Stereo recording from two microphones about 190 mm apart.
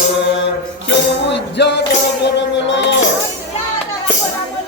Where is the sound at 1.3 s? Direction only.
65° left (ahead or behind).